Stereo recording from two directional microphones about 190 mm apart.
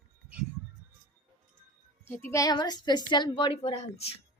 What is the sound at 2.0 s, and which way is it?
A woman's voice, 15° left (ahead or behind).